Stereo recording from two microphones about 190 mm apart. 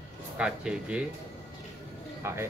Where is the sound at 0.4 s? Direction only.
5° right (ahead or behind).